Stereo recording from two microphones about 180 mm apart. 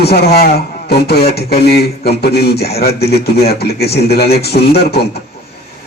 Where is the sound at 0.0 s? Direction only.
65° left (ahead or behind).